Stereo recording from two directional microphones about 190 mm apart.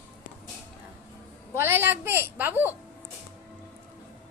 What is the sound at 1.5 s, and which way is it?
Speech, 10° right (ahead or behind).